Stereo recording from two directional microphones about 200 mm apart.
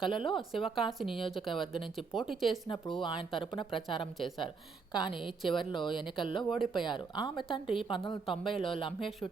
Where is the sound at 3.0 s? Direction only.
25° left (ahead or behind).